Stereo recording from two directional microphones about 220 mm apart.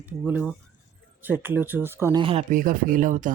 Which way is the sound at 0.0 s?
5° right (ahead or behind).